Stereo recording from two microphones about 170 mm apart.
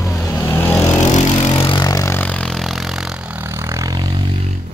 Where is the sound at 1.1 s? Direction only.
40° left (ahead or behind).